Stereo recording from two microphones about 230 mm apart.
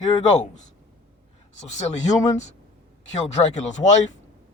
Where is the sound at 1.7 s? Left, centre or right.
Left.